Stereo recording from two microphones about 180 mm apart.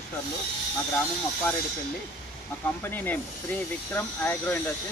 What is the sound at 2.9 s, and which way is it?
Speech, 10° left (ahead or behind).